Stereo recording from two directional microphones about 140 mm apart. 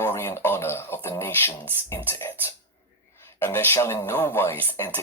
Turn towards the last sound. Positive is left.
turn(degrees=15)  # may be behind; listen again after turning